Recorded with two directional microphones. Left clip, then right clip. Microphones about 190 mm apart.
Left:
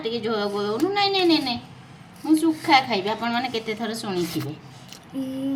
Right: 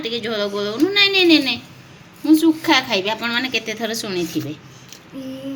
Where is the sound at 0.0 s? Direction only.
15° right (ahead or behind).